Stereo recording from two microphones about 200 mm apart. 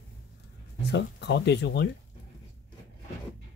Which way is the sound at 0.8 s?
60° left (ahead or behind).